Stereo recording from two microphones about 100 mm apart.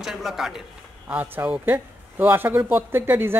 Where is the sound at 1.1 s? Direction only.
15° right (ahead or behind).